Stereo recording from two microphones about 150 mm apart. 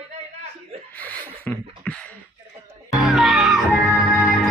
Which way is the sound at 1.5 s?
10° left (ahead or behind).